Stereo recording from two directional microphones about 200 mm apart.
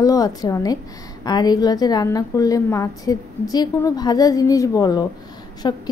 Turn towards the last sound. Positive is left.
turn(degrees=20)  # may be behind; listen again after turning